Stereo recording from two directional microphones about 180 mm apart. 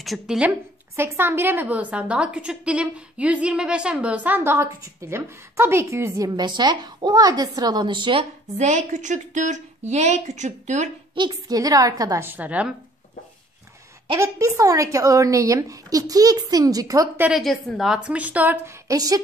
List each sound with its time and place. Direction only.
0.0 s a woman's voice: centre (ahead or behind); by 10.9 s 40° right (ahead or behind)
11.1 s a woman's voice: 25° right (ahead or behind); by 12.7 s 5° right (ahead or behind)
14.1 s a woman's voice: 15° right (ahead or behind)
17.3 s a woman's voice: centre (ahead or behind); by 19.2 s 20° right (ahead or behind)